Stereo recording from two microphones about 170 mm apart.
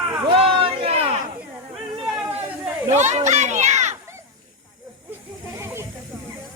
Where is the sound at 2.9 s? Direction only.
40° right (ahead or behind).